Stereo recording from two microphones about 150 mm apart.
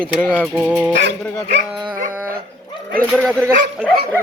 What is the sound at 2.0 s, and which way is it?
Dog, 65° right (ahead or behind).